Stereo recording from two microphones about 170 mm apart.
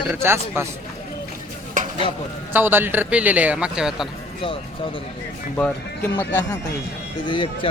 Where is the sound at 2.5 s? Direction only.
10° right (ahead or behind).